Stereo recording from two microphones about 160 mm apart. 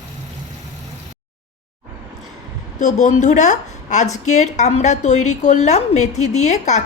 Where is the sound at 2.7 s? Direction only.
50° left (ahead or behind).